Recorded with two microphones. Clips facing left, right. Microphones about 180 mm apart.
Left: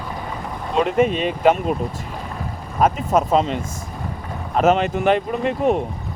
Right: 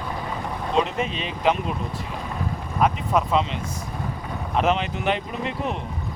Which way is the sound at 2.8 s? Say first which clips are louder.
Left 4 dB; 45° left (ahead or behind).